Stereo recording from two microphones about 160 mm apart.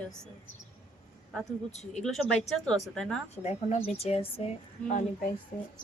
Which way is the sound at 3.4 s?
40° left (ahead or behind).